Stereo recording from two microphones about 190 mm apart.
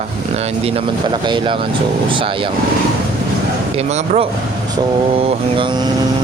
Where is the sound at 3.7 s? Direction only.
35° right (ahead or behind).